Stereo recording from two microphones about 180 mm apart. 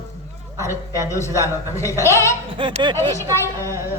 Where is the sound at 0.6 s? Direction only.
15° left (ahead or behind).